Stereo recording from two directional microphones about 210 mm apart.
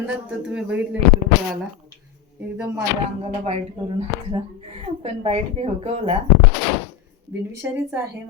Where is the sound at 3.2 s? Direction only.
30° right (ahead or behind).